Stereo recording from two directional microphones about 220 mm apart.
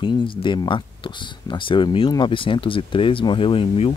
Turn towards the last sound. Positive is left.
turn(degrees=25)  # may be behind; listen again after turning